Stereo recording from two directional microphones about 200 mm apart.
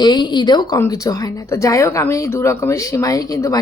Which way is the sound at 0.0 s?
20° left (ahead or behind).